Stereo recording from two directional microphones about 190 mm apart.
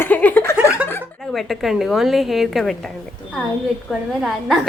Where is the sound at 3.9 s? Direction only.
Centre (ahead or behind).